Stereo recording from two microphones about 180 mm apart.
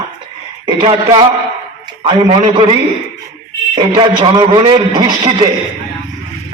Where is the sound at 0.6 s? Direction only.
25° right (ahead or behind).